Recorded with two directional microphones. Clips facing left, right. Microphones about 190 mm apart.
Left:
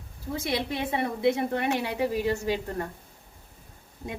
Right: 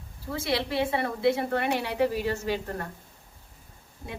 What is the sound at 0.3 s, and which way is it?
A woman's voice, 20° left (ahead or behind).